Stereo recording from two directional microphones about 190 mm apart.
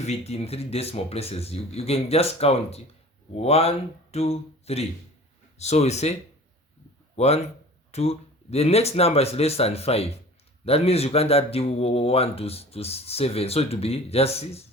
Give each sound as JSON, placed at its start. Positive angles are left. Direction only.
{"t": 0.0, "sound": "speech", "side_deg": 35}
{"t": 7.2, "sound": "speech", "side_deg": 35}